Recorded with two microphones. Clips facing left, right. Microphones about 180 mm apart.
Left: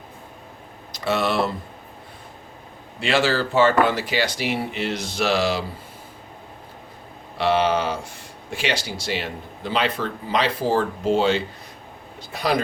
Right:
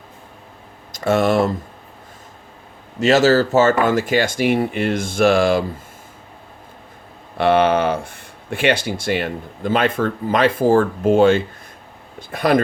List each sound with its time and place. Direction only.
0.9 s speech: 45° right (ahead or behind)
3.0 s speech: 40° right (ahead or behind)
7.3 s speech: 55° right (ahead or behind)